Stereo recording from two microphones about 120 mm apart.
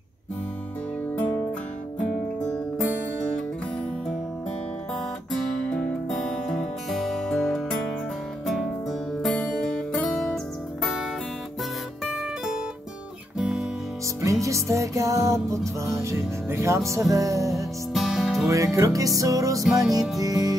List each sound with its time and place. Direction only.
1.1 s music: 15° left (ahead or behind)
5.3 s music: 5° left (ahead or behind)
9.2 s music: 5° left (ahead or behind)
12.0 s music: 5° right (ahead or behind)
13.4 s guitar: 5° right (ahead or behind)
14.2 s music: 25° right (ahead or behind)
17.9 s music: centre (ahead or behind)
18.5 s music: 25° right (ahead or behind)